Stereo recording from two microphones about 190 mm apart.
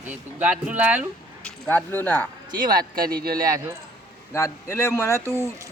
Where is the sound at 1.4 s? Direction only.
5° left (ahead or behind).